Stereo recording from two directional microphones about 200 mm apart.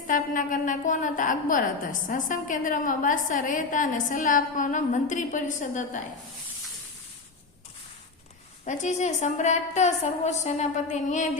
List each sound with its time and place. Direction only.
0.1 s a woman's voice: 40° left (ahead or behind)
8.6 s a woman's voice: 35° left (ahead or behind)